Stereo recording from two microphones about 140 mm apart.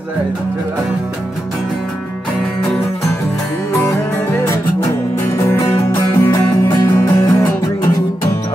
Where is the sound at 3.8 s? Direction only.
20° left (ahead or behind).